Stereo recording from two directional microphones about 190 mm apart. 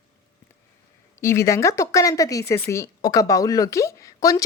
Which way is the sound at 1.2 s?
15° left (ahead or behind).